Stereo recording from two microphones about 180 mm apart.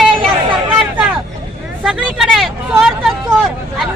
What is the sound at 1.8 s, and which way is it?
Vehicle, centre (ahead or behind).